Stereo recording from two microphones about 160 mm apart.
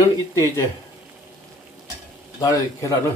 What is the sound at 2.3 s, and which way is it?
Speech, 20° left (ahead or behind).